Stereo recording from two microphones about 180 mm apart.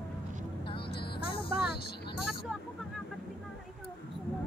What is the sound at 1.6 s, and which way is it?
Vehicle, 60° left (ahead or behind).